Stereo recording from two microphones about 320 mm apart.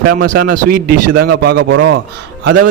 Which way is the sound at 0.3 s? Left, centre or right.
Right.